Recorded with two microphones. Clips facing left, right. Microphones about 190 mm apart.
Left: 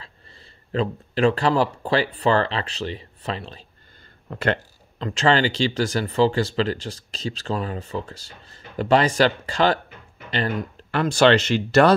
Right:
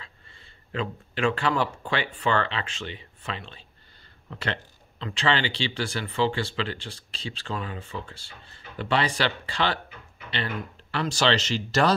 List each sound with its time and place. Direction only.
0.0 s speech: 35° left (ahead or behind)
4.3 s speech: 50° left (ahead or behind)